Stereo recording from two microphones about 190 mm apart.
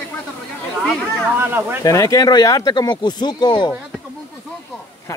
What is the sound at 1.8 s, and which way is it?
Speech, 20° left (ahead or behind).